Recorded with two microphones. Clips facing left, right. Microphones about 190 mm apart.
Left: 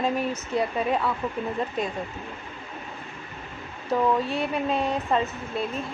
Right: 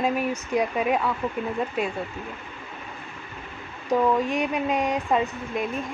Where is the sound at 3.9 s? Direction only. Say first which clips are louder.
Right 2 dB; 15° right (ahead or behind).